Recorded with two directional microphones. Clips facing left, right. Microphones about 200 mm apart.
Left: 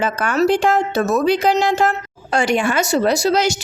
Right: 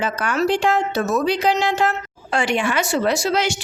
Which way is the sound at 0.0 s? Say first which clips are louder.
Left 4 dB; 50° left (ahead or behind).